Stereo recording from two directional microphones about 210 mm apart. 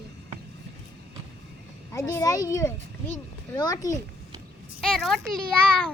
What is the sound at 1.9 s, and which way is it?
Speech, 15° left (ahead or behind).